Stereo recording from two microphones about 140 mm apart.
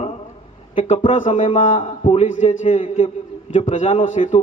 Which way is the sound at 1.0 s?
60° left (ahead or behind).